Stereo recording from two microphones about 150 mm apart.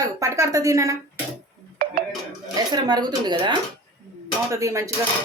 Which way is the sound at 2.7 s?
25° right (ahead or behind).